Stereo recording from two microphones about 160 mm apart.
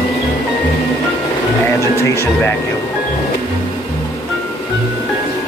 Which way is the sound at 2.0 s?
15° left (ahead or behind).